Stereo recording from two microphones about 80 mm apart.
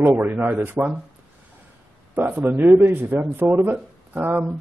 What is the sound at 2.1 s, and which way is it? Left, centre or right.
Speech, right.